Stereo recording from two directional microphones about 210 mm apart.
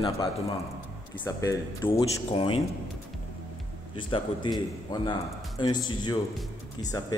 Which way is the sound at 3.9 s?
20° left (ahead or behind).